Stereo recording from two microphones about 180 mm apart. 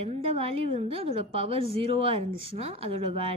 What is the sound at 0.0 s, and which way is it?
A woman's voice, 35° right (ahead or behind).